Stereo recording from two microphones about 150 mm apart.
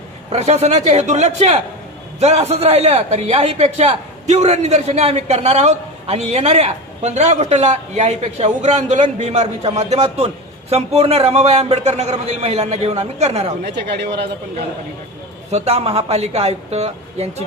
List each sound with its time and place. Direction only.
0.3 s a man's voice: 45° right (ahead or behind)
13.7 s speech: 90° right
15.4 s a man's voice: 45° right (ahead or behind)